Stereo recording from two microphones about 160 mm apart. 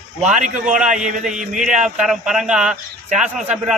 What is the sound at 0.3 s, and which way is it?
Speech, 50° right (ahead or behind).